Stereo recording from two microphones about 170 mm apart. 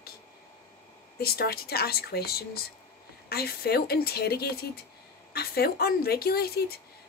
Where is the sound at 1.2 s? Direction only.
65° left (ahead or behind).